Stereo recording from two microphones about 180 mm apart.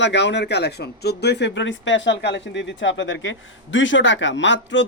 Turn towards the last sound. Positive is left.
turn(degrees=90)